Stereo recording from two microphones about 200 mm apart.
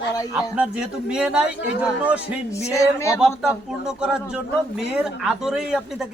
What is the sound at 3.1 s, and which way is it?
Speech, 5° right (ahead or behind).